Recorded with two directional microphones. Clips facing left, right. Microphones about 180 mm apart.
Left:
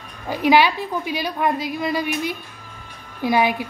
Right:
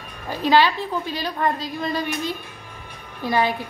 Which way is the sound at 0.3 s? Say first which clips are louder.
Left 2 dB; 15° left (ahead or behind).